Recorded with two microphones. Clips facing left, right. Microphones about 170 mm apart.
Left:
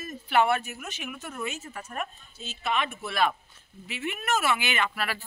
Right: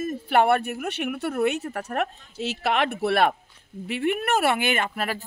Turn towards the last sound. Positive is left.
turn(degrees=-45)  # may be behind; listen again after turning